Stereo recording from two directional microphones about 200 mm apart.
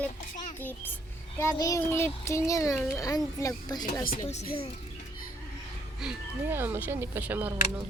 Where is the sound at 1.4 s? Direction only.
15° left (ahead or behind).